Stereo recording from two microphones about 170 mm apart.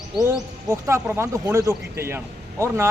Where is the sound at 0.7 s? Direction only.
15° right (ahead or behind).